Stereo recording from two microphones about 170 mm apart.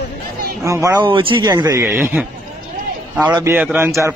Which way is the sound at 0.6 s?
15° right (ahead or behind).